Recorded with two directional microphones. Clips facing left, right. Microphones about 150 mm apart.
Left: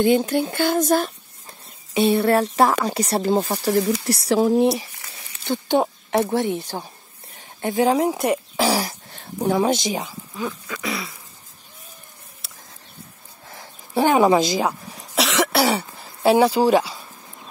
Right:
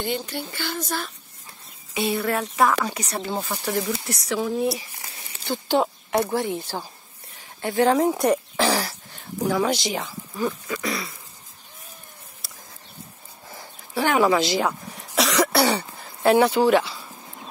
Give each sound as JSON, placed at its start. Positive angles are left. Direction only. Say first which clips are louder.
{"t": 0.0, "sound": "speech", "louder": "left 11 dB", "side_deg": 50}
{"t": 2.0, "sound": "speech", "louder": "left 7 dB", "side_deg": 30}
{"t": 5.4, "sound": "a sound", "louder": "left 2 dB", "side_deg": 20}
{"t": 6.2, "sound": "speech", "louder": "left 3 dB", "side_deg": 20}
{"t": 8.0, "sound": "speech", "louder": "even", "side_deg": 0}
{"t": 9.1, "sound": "a sound", "louder": "even", "side_deg": 35}
{"t": 9.5, "sound": "speech", "louder": "left 4 dB", "side_deg": 20}
{"t": 10.3, "sound": "a sound", "louder": "right 3 dB", "side_deg": 0}
{"t": 13.9, "sound": "speech", "louder": "left 4 dB", "side_deg": 20}
{"t": 15.2, "sound": "throat clearing", "louder": "left 1 dB", "side_deg": 0}
{"t": 16.6, "sound": "speech", "louder": "left 1 dB", "side_deg": 15}